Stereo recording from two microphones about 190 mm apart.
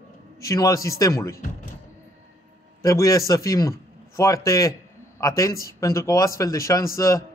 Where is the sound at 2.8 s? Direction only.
15° left (ahead or behind).